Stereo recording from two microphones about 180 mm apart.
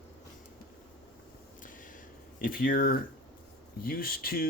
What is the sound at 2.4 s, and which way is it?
Speech, 50° left (ahead or behind).